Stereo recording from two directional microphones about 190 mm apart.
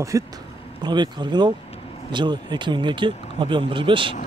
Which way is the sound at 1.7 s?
30° left (ahead or behind).